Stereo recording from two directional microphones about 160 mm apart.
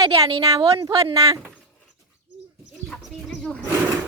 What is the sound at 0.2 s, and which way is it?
Speech, 35° right (ahead or behind).